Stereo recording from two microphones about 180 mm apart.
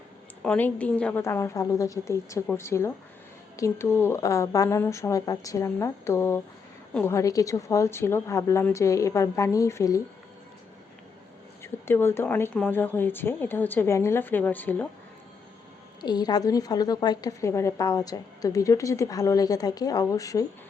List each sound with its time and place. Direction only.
0.4 s speech: 10° left (ahead or behind)
11.6 s speech: 15° left (ahead or behind)
16.0 s a woman's voice: 25° left (ahead or behind)